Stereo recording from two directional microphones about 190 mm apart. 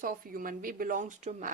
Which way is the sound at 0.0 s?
50° right (ahead or behind).